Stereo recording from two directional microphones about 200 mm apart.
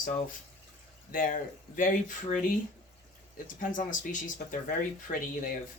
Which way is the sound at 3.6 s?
40° left (ahead or behind).